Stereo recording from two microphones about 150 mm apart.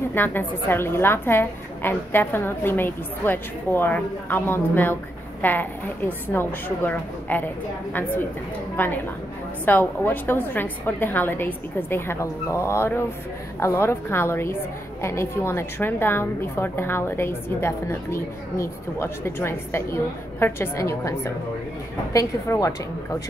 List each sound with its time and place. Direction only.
0.1 s a woman's voice: 15° left (ahead or behind)
8.7 s a woman's voice: 15° left (ahead or behind)